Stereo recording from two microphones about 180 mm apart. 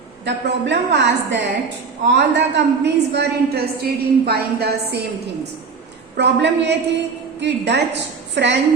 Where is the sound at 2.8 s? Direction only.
65° right (ahead or behind).